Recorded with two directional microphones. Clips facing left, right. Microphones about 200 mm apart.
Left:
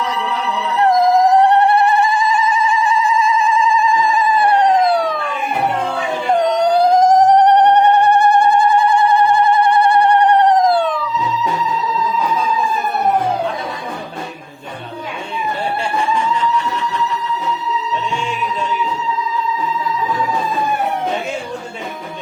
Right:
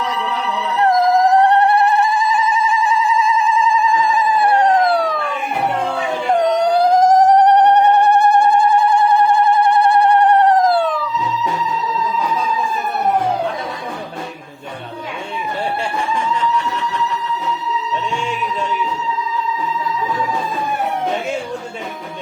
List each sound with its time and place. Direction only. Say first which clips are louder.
0.9 s dog: left 1 dB; centre (ahead or behind)
6.4 s dog: left 1 dB; 5° right (ahead or behind)